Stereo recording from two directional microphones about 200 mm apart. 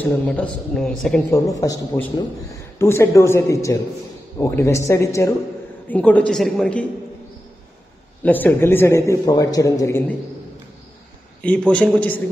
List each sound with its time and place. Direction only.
0.0 s a man's voice: 5° left (ahead or behind)
1.3 s a man's voice: 15° left (ahead or behind)
8.2 s a man's voice: 10° left (ahead or behind)
11.4 s a man's voice: 5° left (ahead or behind)